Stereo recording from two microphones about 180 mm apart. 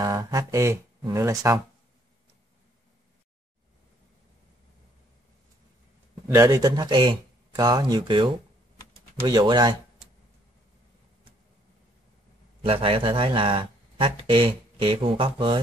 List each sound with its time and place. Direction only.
0.0 s speech: 20° right (ahead or behind)
6.2 s speech: 15° right (ahead or behind)
12.6 s speech: 30° right (ahead or behind)